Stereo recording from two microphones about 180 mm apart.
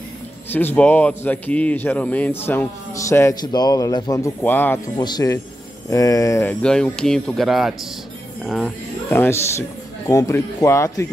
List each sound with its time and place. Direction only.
0.5 s speech: 10° left (ahead or behind)
4.9 s speech: 20° left (ahead or behind)
6.6 s speech: 5° left (ahead or behind)
9.1 s speech: 15° left (ahead or behind)